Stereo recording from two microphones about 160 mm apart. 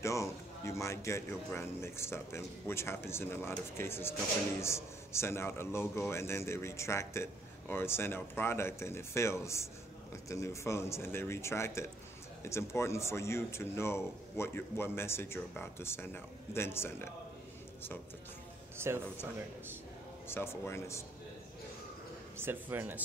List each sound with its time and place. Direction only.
0.0 s a man's voice: 20° left (ahead or behind)
18.8 s speech: 15° right (ahead or behind)
20.2 s a man's voice: 15° left (ahead or behind)
22.4 s speech: 15° right (ahead or behind)